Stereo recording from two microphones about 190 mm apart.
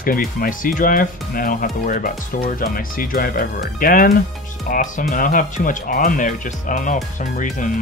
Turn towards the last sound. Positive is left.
turn(degrees=40)  # may be behind; listen again after turning